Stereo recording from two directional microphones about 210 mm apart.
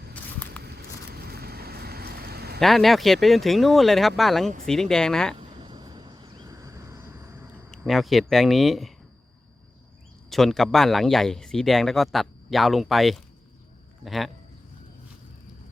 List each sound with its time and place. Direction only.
0.6 s vehicle: 50° right (ahead or behind)
2.6 s speech: centre (ahead or behind)
5.4 s a sound: 20° right (ahead or behind)
7.7 s speech: centre (ahead or behind)
10.2 s speech: centre (ahead or behind)